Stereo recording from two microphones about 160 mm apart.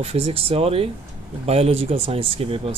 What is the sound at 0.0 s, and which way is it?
Speech, 40° right (ahead or behind).